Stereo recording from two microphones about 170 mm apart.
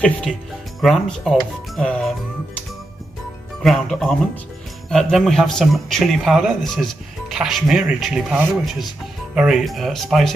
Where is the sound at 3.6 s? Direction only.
Centre (ahead or behind).